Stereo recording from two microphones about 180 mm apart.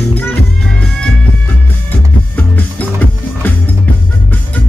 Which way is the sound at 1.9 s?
10° left (ahead or behind).